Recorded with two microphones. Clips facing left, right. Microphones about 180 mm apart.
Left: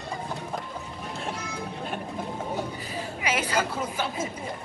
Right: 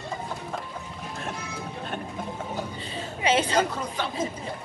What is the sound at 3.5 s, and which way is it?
Speech, 5° left (ahead or behind).